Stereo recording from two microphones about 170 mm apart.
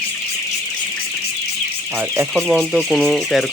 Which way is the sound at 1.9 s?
15° right (ahead or behind).